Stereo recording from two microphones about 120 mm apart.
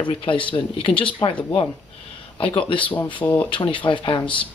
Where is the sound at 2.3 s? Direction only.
45° left (ahead or behind).